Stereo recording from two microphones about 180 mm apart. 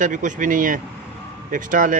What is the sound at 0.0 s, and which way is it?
Speech, 45° right (ahead or behind).